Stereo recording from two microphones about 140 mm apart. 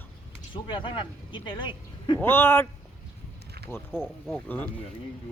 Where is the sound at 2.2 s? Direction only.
15° left (ahead or behind).